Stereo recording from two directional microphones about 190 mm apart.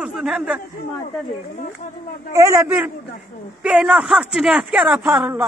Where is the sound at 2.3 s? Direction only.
15° right (ahead or behind).